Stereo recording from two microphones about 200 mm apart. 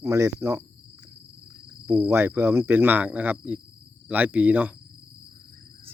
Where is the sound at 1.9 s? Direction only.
10° right (ahead or behind).